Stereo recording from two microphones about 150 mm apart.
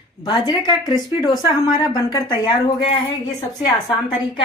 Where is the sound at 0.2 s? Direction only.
30° left (ahead or behind).